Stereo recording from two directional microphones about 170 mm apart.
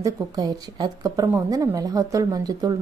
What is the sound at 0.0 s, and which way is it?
A woman's voice, 20° right (ahead or behind).